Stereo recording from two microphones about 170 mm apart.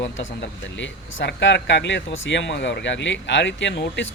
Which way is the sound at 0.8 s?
90° left.